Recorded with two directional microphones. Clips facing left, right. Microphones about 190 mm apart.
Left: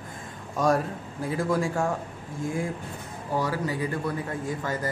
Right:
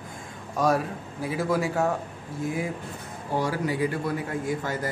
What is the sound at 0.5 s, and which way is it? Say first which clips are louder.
A man's voice: even; 5° right (ahead or behind).